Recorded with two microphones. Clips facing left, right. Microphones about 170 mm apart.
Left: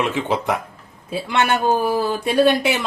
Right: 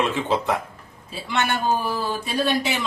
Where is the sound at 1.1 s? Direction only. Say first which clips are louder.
Left 5 dB; 60° left (ahead or behind).